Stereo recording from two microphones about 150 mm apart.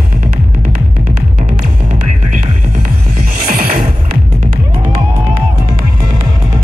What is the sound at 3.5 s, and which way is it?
Music, 75° right (ahead or behind).